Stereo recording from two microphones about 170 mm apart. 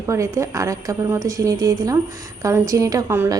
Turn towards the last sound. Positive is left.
turn(degrees=-15)  # may be behind; listen again after turning